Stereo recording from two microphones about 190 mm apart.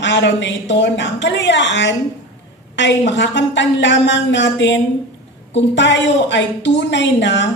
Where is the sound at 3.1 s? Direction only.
70° left (ahead or behind).